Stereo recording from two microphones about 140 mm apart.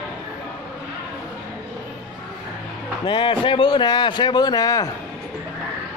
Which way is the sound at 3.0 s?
35° left (ahead or behind).